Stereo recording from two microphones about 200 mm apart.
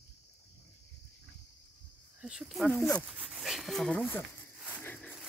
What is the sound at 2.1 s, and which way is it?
Speech, 5° right (ahead or behind).